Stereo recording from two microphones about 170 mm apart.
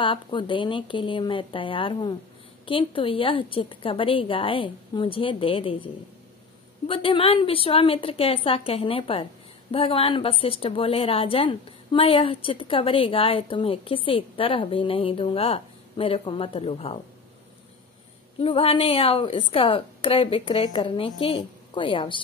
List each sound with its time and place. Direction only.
0.0 s a woman's voice: 30° left (ahead or behind)
6.9 s a woman's voice: 30° left (ahead or behind)
18.4 s a woman's voice: 35° left (ahead or behind)